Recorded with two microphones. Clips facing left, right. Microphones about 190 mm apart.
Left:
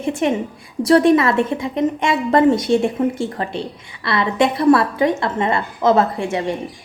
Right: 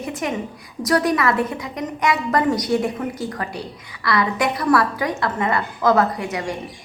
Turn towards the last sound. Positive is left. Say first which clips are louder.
# left 3 dB
turn(degrees=25)  # may be behind; listen again after turning